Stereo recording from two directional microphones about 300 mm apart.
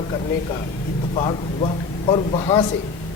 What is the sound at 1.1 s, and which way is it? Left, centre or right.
A man's voice, centre.